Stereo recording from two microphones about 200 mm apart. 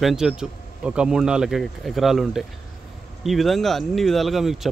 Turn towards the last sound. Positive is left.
turn(degrees=0)  # may be behind; listen again after turning